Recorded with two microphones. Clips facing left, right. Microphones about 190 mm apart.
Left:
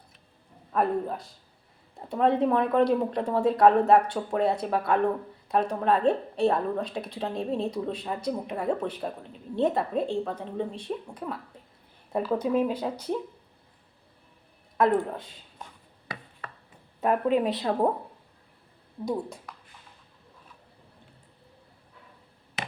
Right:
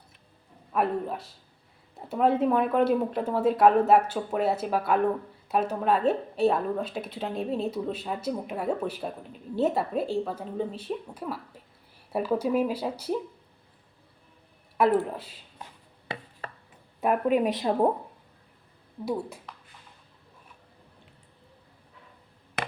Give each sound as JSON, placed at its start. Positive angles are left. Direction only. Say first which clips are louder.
{"t": 0.7, "sound": "a woman's voice", "louder": "left 1 dB", "side_deg": -5}
{"t": 14.8, "sound": "speech", "louder": "even", "side_deg": -5}
{"t": 16.1, "sound": "a sound", "louder": "right 4 dB", "side_deg": -25}
{"t": 17.0, "sound": "speech", "louder": "even", "side_deg": -10}
{"t": 19.0, "sound": "a woman's voice", "louder": "even", "side_deg": -5}
{"t": 22.6, "sound": "a sound", "louder": "right 3 dB", "side_deg": -60}